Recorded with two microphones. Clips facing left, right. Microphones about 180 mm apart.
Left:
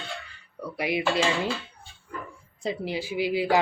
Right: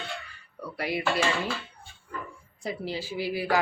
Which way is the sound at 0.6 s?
15° left (ahead or behind).